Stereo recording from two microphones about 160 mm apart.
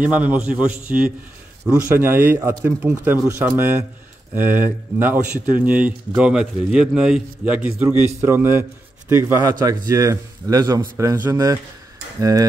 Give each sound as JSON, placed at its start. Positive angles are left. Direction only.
{"t": 0.0, "sound": "a man's voice", "side_deg": -10}